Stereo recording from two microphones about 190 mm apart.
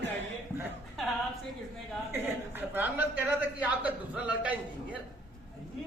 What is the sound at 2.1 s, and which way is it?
A man's voice, 10° right (ahead or behind).